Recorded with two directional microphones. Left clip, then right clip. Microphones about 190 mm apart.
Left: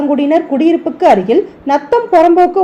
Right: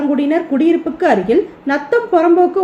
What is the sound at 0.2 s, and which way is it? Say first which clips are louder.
A woman's voice: left 4 dB; 15° left (ahead or behind).